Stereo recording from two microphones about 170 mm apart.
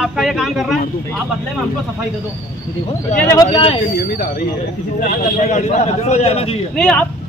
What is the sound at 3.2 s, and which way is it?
Speech, 20° left (ahead or behind).